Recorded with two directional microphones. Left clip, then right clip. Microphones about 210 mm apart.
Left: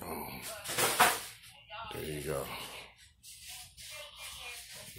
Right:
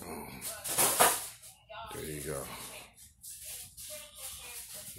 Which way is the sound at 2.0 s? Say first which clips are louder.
Left 4 dB; centre (ahead or behind).